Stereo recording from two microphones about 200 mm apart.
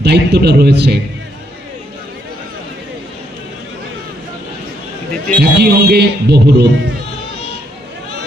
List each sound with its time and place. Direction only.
0.0 s a man's voice: 55° right (ahead or behind)
5.4 s a man's voice: 55° right (ahead or behind)